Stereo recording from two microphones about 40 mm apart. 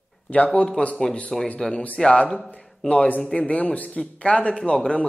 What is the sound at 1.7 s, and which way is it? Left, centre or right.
Speech, left.